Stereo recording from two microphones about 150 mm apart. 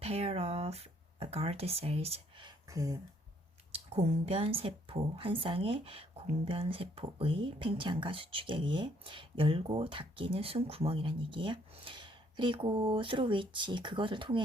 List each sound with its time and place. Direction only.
0.0 s speech: 40° right (ahead or behind)
2.6 s speech: 25° right (ahead or behind)
3.7 s speech: 40° right (ahead or behind)